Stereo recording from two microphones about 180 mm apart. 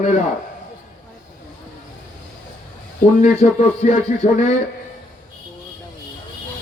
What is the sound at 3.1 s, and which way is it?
A man's voice, 45° left (ahead or behind).